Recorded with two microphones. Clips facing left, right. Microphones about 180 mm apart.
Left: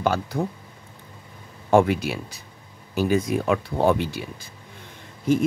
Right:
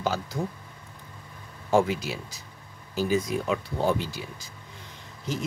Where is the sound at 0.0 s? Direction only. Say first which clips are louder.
Left 5 dB; 60° left (ahead or behind).